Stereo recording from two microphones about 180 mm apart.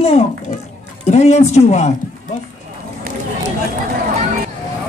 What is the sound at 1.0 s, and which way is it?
Speech, 40° left (ahead or behind).